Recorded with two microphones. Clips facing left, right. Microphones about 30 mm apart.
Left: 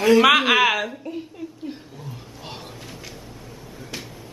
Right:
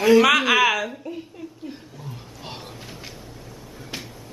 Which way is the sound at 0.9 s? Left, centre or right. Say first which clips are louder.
Left 1 dB; centre.